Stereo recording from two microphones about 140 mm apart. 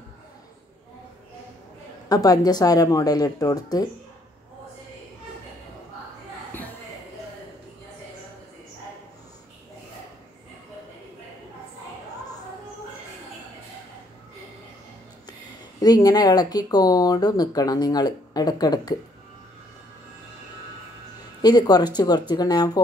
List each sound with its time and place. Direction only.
2.0 s speech: 25° left (ahead or behind)
15.8 s speech: 30° left (ahead or behind)
21.4 s speech: 30° left (ahead or behind)